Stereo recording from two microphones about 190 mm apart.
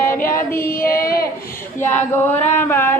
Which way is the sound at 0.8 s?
50° left (ahead or behind).